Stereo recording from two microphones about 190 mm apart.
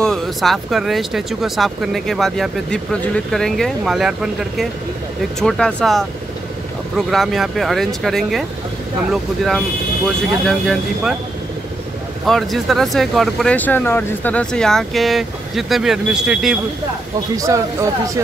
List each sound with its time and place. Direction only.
0.0 s speech: centre (ahead or behind)
12.3 s speech: centre (ahead or behind)
17.4 s speech: 15° right (ahead or behind)